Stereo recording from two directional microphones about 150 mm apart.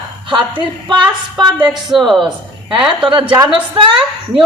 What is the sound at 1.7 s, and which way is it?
Speech, centre (ahead or behind).